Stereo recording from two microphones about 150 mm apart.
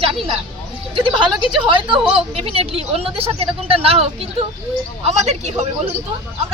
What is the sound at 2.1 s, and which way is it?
Speech, 40° right (ahead or behind).